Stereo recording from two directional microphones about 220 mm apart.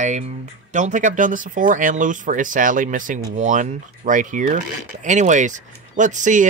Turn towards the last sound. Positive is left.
turn(degrees=-35)  # may be behind; listen again after turning